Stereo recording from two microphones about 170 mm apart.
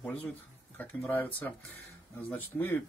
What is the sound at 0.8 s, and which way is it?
Speech, 10° left (ahead or behind).